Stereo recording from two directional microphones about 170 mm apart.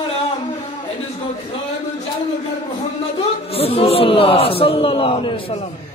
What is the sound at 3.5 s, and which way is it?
A man's voice, 35° left (ahead or behind).